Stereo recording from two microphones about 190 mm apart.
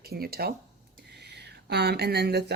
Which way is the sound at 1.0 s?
60° right (ahead or behind).